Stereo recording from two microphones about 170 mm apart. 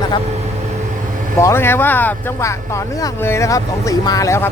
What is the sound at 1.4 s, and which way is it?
Speech, 15° left (ahead or behind).